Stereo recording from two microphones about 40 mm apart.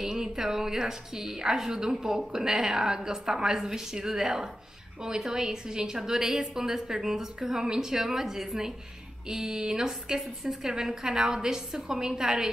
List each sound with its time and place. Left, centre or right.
0.0 s a woman's voice: centre